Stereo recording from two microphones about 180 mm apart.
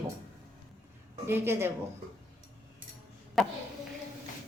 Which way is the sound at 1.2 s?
15° right (ahead or behind).